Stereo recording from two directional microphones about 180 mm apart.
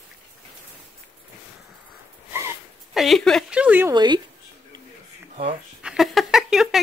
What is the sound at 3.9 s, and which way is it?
Speech, 25° right (ahead or behind).